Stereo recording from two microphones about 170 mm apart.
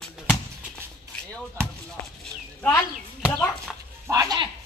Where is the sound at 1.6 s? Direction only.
15° right (ahead or behind).